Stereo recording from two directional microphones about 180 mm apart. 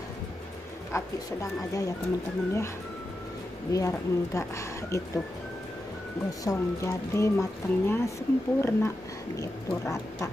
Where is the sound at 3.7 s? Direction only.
20° left (ahead or behind).